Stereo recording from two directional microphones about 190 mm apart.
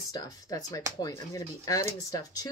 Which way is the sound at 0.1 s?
20° left (ahead or behind).